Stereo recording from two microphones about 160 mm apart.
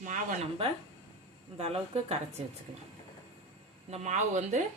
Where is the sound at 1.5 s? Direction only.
40° right (ahead or behind).